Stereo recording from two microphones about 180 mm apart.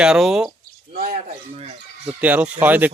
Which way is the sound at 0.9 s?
40° right (ahead or behind).